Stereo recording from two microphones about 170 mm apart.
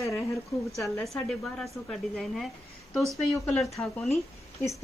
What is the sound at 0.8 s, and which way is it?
Speech, centre (ahead or behind).